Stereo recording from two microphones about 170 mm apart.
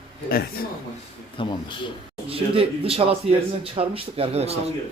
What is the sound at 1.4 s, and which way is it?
Speech, 30° left (ahead or behind).